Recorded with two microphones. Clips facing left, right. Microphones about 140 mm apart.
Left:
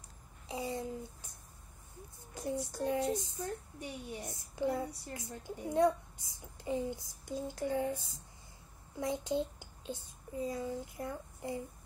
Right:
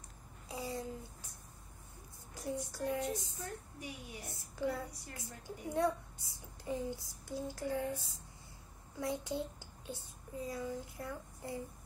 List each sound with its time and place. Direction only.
0.5 s a sound: 20° left (ahead or behind)
2.3 s child singing: 25° left (ahead or behind)
3.8 s a woman's voice: 25° left (ahead or behind)